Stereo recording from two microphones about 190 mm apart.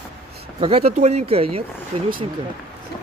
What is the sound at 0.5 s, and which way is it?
A man's voice, 30° right (ahead or behind).